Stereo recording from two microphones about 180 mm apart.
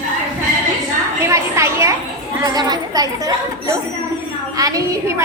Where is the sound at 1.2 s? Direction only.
15° right (ahead or behind).